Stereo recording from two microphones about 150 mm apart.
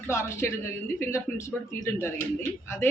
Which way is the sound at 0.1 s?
20° left (ahead or behind).